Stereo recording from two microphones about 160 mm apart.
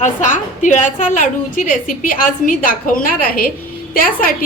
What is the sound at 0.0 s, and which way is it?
A woman's voice, 55° left (ahead or behind).